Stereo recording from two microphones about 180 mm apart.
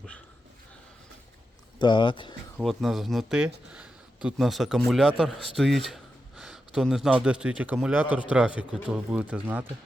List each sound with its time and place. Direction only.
1.8 s speech: 25° left (ahead or behind)
2.6 s speech: centre (ahead or behind)